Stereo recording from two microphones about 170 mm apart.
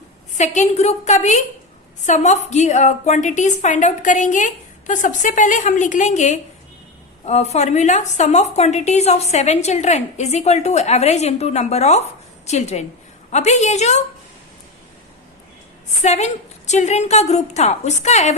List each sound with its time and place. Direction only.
0.3 s a woman's voice: 45° left (ahead or behind)
16.0 s a woman's voice: 40° left (ahead or behind)